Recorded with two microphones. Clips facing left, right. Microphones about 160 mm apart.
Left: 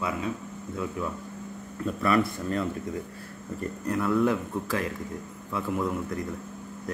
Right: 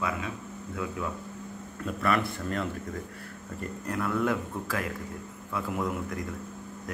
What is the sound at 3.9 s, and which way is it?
Speech, 30° left (ahead or behind).